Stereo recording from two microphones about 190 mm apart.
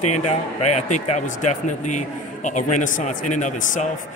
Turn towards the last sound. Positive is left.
turn(degrees=40)  # may be behind; listen again after turning